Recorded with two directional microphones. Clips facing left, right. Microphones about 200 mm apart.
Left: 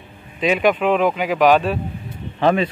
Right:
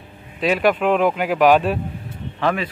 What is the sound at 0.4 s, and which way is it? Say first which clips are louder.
Speech: left 1 dB; 5° right (ahead or behind).